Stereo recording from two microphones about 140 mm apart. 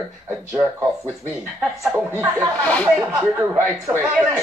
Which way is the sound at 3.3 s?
15° right (ahead or behind).